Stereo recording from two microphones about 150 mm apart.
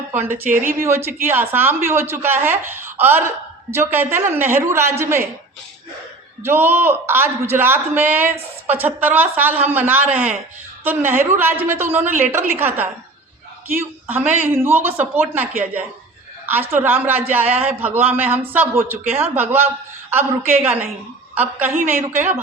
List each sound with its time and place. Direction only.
0.1 s a woman's voice: 15° right (ahead or behind)
6.4 s speech: 15° right (ahead or behind)